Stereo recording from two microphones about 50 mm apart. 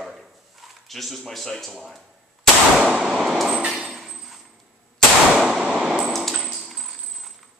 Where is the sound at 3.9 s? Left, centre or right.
Centre.